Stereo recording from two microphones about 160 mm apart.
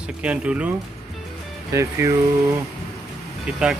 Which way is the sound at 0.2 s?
5° right (ahead or behind).